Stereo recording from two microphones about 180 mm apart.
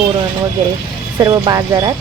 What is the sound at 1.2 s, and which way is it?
Speech, 20° right (ahead or behind).